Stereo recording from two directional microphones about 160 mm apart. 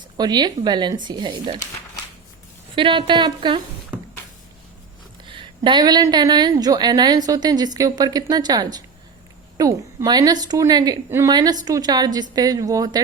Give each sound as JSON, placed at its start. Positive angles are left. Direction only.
{"t": 0.2, "sound": "a woman's voice", "side_deg": -25}
{"t": 2.7, "sound": "a woman's voice", "side_deg": -30}
{"t": 5.3, "sound": "a woman's voice", "side_deg": -30}